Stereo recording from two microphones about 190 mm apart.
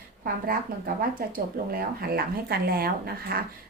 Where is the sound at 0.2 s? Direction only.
50° right (ahead or behind).